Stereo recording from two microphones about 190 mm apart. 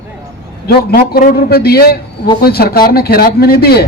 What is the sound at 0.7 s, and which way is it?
A man's voice, 55° left (ahead or behind).